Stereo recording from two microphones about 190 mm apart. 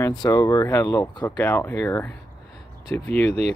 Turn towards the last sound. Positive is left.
turn(degrees=10)  # may be behind; listen again after turning